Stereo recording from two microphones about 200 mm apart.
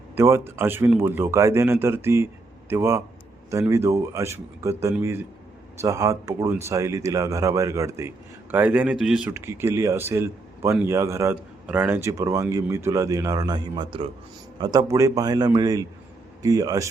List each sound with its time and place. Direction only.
0.2 s a man's voice: 10° right (ahead or behind)